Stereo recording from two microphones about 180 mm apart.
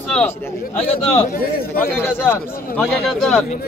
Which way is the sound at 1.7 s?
10° left (ahead or behind).